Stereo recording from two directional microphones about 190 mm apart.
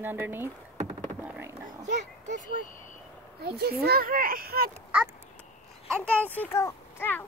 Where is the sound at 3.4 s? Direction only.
55° right (ahead or behind).